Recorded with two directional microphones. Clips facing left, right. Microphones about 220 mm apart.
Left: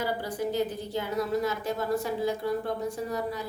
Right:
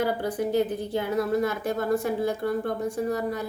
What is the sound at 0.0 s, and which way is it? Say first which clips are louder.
A woman's voice: right 4 dB; 55° right (ahead or behind).